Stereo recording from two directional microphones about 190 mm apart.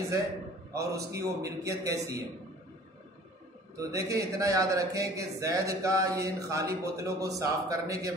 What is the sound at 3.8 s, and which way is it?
A man's voice, 15° right (ahead or behind).